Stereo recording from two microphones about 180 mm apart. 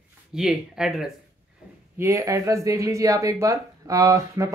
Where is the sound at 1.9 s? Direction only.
15° right (ahead or behind).